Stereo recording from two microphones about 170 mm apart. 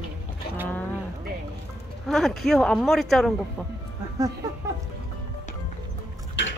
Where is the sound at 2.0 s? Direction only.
Centre (ahead or behind).